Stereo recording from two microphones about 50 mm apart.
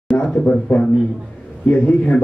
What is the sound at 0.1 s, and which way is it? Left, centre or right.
A man's voice, centre.